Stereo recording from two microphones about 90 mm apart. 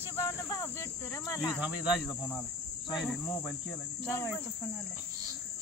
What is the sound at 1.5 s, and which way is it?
Speech, 15° right (ahead or behind).